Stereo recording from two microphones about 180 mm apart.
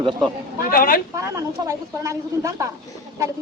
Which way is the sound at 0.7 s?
50° left (ahead or behind).